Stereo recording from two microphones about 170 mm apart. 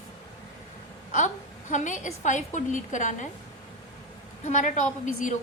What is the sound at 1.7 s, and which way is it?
A woman's voice, 45° left (ahead or behind).